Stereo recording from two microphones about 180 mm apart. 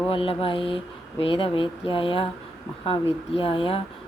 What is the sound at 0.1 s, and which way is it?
Speech, 30° left (ahead or behind).